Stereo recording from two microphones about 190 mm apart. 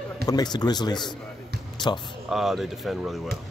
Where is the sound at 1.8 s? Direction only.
25° left (ahead or behind).